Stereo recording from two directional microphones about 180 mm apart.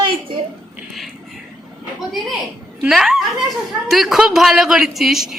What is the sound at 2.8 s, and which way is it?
A woman's voice, centre (ahead or behind).